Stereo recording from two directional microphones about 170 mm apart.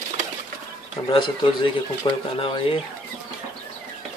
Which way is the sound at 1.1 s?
30° left (ahead or behind).